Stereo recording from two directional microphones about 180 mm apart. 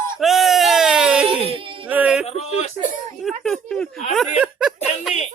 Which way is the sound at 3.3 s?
Centre (ahead or behind).